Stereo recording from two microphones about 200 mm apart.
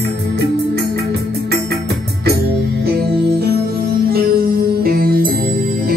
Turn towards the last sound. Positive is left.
turn(degrees=-50)  # may be behind; listen again after turning